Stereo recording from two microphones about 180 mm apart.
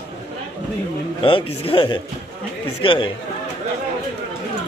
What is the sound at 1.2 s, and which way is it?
A man's voice, 30° left (ahead or behind).